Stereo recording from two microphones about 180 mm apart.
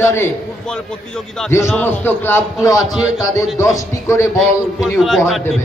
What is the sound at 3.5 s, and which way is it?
Speech, 15° left (ahead or behind).